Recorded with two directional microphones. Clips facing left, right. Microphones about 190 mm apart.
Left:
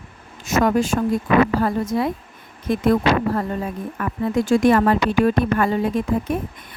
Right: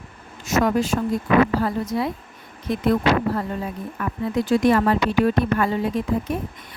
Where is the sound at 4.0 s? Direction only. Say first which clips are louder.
Left 2 dB; 50° left (ahead or behind).